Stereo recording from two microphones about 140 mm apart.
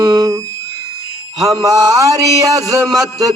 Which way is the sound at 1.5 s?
25° right (ahead or behind).